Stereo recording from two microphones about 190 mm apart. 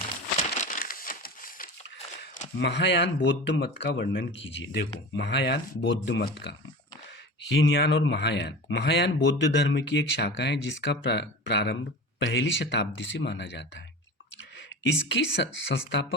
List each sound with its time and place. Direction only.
0.3 s a sound: 40° left (ahead or behind)
2.6 s speech: 65° left (ahead or behind)
7.5 s speech: 80° left
15.1 s speech: 65° left (ahead or behind)